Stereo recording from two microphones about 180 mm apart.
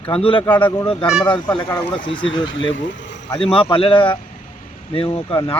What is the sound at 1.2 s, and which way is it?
Speech, 25° left (ahead or behind).